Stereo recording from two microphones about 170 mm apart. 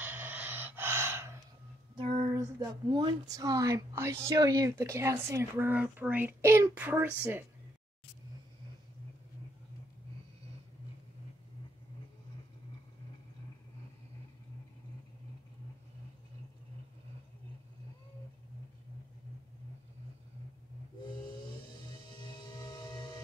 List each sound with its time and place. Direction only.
0.0 s snort: 10° right (ahead or behind)
2.0 s speech: 20° right (ahead or behind)
22.4 s singing bowl: 25° left (ahead or behind)